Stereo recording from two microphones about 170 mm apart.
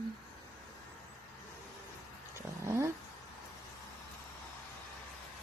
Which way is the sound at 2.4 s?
15° right (ahead or behind).